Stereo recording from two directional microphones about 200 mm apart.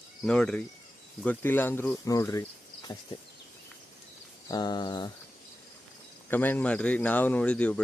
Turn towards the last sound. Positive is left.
turn(degrees=5)  # may be behind; listen again after turning